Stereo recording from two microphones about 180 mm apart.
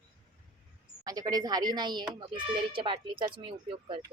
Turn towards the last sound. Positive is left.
turn(degrees=-30)  # may be behind; listen again after turning